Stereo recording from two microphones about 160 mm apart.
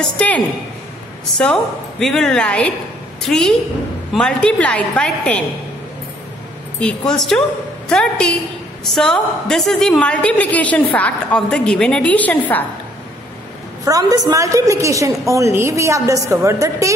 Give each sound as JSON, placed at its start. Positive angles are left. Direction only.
{"t": 0.0, "sound": "a woman's voice", "side_deg": 5}
{"t": 1.4, "sound": "a woman's voice", "side_deg": 5}
{"t": 6.8, "sound": "a woman's voice", "side_deg": 5}
{"t": 13.8, "sound": "a woman's voice", "side_deg": -25}